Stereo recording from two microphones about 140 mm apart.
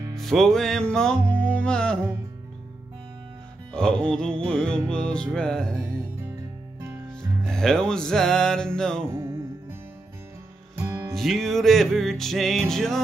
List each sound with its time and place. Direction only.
0.1 s music: centre (ahead or behind)
3.7 s music: 5° left (ahead or behind)
7.4 s music: 5° left (ahead or behind)
9.1 s music: 20° right (ahead or behind)
10.8 s music: 20° right (ahead or behind)
11.1 s music: centre (ahead or behind)